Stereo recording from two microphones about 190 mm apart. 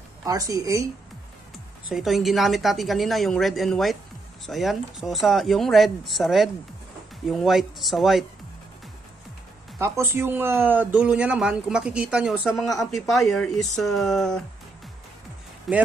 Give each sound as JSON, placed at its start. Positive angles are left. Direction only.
{"t": 0.2, "sound": "speech", "side_deg": -20}
{"t": 1.9, "sound": "speech", "side_deg": 0}
{"t": 9.8, "sound": "speech", "side_deg": -15}
{"t": 15.7, "sound": "speech", "side_deg": 0}